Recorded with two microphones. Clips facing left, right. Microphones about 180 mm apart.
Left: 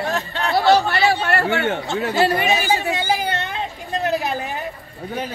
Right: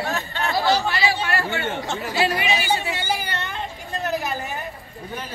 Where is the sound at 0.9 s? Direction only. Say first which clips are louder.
Left 5 dB; 60° left (ahead or behind).